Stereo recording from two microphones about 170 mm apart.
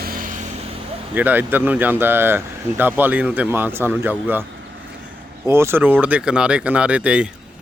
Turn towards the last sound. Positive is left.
turn(degrees=-5)  # may be behind; listen again after turning